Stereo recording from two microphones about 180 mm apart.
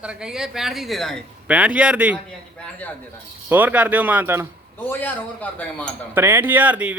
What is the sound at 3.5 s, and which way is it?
Speech, 10° right (ahead or behind).